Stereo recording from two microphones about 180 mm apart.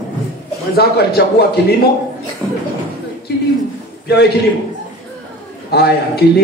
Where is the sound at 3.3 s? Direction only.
65° left (ahead or behind).